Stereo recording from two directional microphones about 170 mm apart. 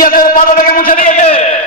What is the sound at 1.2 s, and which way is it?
Speech, 35° left (ahead or behind).